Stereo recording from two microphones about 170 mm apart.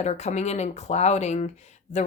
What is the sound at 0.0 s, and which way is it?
Speech, 40° left (ahead or behind).